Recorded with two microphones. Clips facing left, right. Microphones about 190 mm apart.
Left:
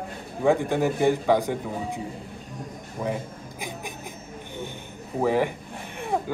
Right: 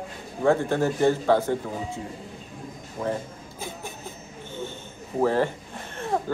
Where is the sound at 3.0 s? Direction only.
15° left (ahead or behind).